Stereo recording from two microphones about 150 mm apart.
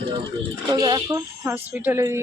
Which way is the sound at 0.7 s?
25° right (ahead or behind).